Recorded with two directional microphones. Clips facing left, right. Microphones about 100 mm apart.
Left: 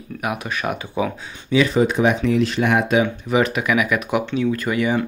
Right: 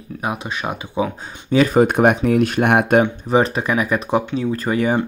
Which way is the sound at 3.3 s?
35° right (ahead or behind).